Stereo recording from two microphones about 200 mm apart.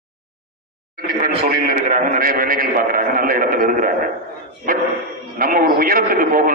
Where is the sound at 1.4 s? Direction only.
40° right (ahead or behind).